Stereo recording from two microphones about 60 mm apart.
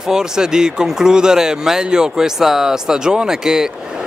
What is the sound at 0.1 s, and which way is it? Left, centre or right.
Speech, centre.